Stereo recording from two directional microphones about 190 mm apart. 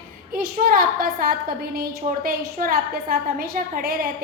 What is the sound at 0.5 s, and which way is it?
A woman's voice, 50° right (ahead or behind).